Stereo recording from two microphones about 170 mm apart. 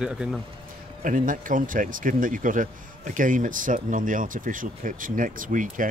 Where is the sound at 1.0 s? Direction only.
50° right (ahead or behind).